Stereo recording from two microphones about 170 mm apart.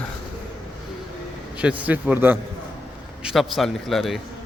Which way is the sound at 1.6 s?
10° right (ahead or behind).